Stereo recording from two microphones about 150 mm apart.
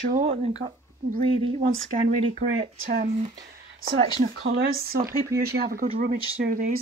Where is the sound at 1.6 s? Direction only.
65° right (ahead or behind).